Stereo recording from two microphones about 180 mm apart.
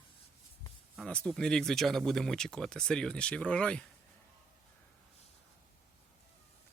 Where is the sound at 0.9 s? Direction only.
5° left (ahead or behind).